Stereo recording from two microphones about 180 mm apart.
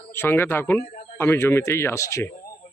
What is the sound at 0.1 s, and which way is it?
Speech, 10° left (ahead or behind).